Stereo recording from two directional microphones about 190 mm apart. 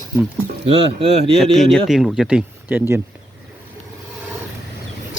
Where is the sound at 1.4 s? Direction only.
Centre (ahead or behind).